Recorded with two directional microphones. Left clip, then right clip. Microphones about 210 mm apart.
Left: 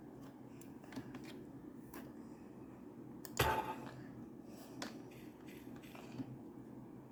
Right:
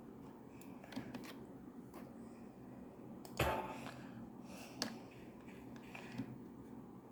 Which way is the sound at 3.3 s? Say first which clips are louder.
Left 2 dB; 35° left (ahead or behind).